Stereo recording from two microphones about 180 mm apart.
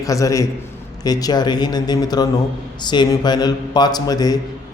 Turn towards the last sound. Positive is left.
turn(degrees=20)  # may be behind; listen again after turning